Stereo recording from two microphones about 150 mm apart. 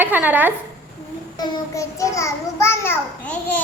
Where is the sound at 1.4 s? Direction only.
25° left (ahead or behind).